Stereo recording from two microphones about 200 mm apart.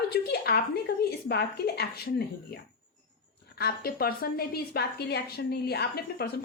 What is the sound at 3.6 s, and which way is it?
Speech, 50° left (ahead or behind).